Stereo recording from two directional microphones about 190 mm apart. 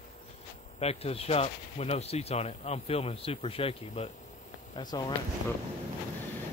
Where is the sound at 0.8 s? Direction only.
30° left (ahead or behind).